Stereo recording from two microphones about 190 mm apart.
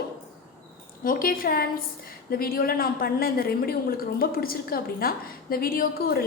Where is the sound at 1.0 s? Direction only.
50° left (ahead or behind).